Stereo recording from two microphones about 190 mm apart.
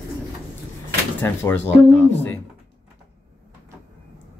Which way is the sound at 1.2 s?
10° left (ahead or behind).